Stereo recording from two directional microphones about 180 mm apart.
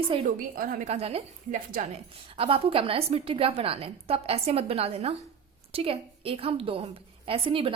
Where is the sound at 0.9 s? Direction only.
35° right (ahead or behind).